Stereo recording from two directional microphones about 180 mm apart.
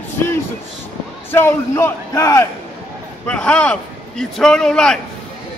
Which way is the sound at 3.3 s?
5° left (ahead or behind).